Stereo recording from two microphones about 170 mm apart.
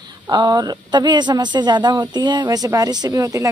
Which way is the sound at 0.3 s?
25° right (ahead or behind).